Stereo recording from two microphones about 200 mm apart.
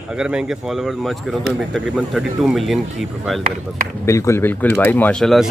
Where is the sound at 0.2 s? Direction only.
5° right (ahead or behind).